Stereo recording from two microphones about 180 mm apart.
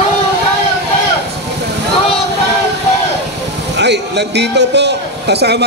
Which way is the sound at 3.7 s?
70° right (ahead or behind).